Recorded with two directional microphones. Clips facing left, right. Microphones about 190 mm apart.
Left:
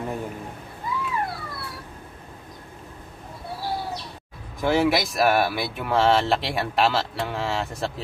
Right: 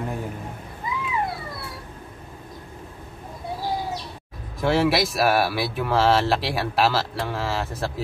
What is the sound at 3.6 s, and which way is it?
Bird, 15° right (ahead or behind).